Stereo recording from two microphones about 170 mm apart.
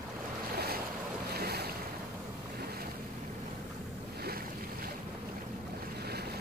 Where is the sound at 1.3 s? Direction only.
65° right (ahead or behind).